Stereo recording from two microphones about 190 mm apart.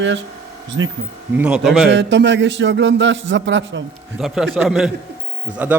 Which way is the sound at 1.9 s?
65° right (ahead or behind).